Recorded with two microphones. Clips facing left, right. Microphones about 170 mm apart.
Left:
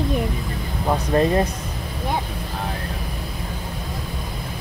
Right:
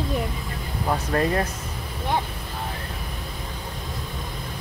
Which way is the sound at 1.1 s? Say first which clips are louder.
Left 5 dB; 20° left (ahead or behind).